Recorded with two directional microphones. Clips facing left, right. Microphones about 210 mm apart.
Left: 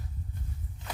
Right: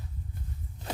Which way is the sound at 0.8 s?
40° right (ahead or behind).